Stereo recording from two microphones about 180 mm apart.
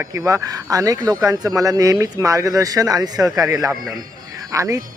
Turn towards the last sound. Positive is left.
turn(degrees=-15)  # may be behind; listen again after turning